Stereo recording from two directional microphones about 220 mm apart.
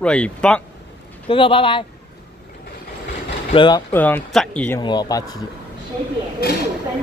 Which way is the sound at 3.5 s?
20° left (ahead or behind).